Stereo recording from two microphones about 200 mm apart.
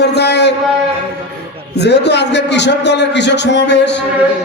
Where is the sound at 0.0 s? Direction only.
55° left (ahead or behind).